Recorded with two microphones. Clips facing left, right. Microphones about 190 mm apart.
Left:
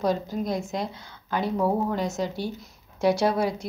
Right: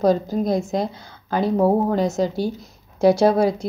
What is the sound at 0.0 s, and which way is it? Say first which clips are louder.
A woman's voice: right 7 dB; 40° right (ahead or behind).